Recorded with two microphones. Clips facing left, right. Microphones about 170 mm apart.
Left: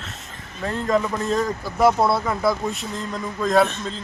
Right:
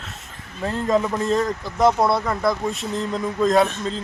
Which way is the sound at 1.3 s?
5° left (ahead or behind).